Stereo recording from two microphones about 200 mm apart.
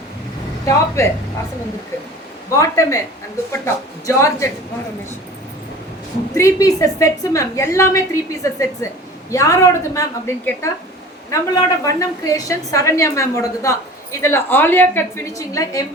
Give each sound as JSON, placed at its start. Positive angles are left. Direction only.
{"t": 0.6, "sound": "speech", "side_deg": 15}
{"t": 2.6, "sound": "a woman's voice", "side_deg": 15}
{"t": 4.0, "sound": "a woman's voice", "side_deg": 15}
{"t": 6.3, "sound": "a woman's voice", "side_deg": 15}